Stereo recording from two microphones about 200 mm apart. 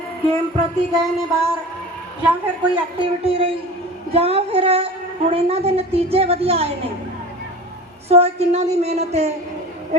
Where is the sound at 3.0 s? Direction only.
30° right (ahead or behind).